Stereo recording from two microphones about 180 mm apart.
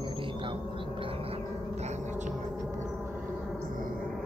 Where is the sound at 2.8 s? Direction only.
5° right (ahead or behind).